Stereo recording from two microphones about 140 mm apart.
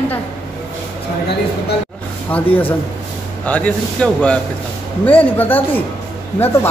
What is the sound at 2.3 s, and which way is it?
A woman's voice, 10° left (ahead or behind).